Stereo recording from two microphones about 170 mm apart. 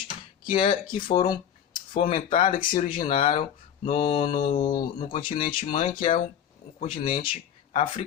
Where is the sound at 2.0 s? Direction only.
30° left (ahead or behind).